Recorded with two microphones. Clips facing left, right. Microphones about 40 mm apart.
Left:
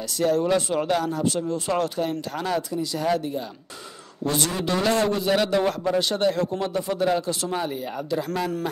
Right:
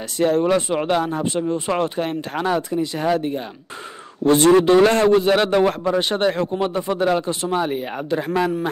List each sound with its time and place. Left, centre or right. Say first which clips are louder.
0.2 s a man's voice: right 4 dB; right
8.3 s a man's voice: right 6 dB; centre